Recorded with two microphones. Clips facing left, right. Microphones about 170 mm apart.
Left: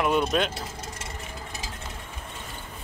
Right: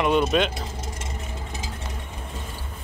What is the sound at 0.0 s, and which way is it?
Speech, centre (ahead or behind).